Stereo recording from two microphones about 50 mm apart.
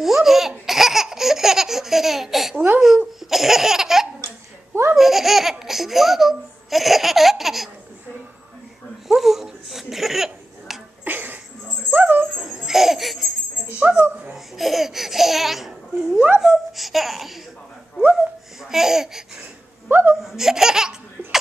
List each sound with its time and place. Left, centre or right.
0.0 s laughter: centre
2.5 s speech: right
3.2 s laughter: centre
9.0 s a sound: centre
11.1 s a sound: right
11.9 s dog: right
12.4 s jingle bell: centre
13.8 s a sound: right
14.3 s laughter: centre
16.3 s babbling: centre
18.1 s laughter: centre
19.9 s wail: right
20.2 s laughter: centre